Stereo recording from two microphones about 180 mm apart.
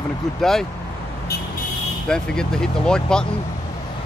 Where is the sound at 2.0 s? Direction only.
5° left (ahead or behind).